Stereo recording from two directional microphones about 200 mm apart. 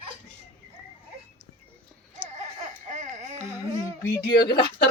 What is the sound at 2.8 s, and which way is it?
Baby cry, 35° right (ahead or behind).